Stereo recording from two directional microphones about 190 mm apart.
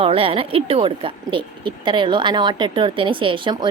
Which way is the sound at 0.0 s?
30° right (ahead or behind).